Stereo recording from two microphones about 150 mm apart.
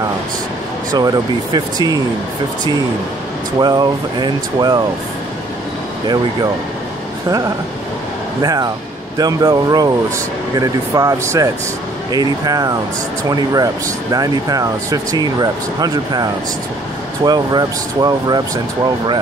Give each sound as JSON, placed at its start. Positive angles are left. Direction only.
{"t": 0.9, "sound": "speech", "side_deg": -25}
{"t": 3.5, "sound": "speech", "side_deg": -25}
{"t": 8.4, "sound": "speech", "side_deg": -25}